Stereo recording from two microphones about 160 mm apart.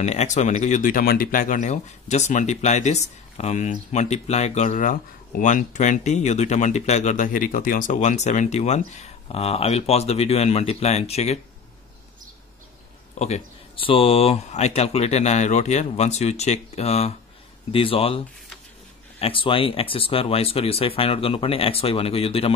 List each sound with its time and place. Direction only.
0.0 s speech: 45° left (ahead or behind)
13.2 s speech: 40° left (ahead or behind)